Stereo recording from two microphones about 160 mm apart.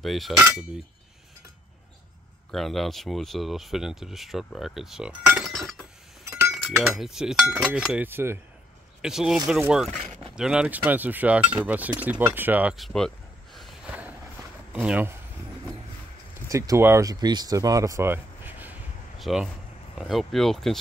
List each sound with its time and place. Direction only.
0.0 s speech: centre (ahead or behind)
2.5 s speech: centre (ahead or behind)
5.4 s chink: centre (ahead or behind)
6.5 s speech: centre (ahead or behind)
9.0 s speech: 5° right (ahead or behind)
10.3 s cutlery: 5° right (ahead or behind)
12.4 s speech: 10° right (ahead or behind)
14.7 s cutlery: 10° right (ahead or behind)
16.4 s speech: 20° right (ahead or behind)
19.1 s speech: centre (ahead or behind)